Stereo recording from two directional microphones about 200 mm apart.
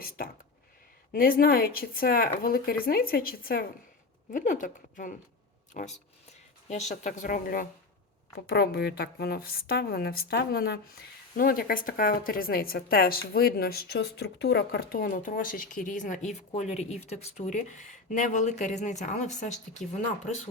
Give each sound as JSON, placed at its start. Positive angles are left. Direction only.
{"t": 1.1, "sound": "a woman's voice", "side_deg": 45}